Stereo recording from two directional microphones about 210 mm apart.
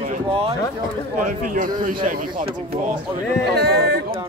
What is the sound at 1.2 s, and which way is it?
Speech, 40° right (ahead or behind).